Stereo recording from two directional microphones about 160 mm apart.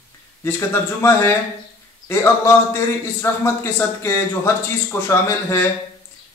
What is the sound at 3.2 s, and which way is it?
Speech, 20° left (ahead or behind).